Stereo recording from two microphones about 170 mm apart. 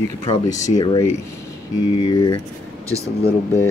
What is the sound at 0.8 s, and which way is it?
Speech, 25° left (ahead or behind).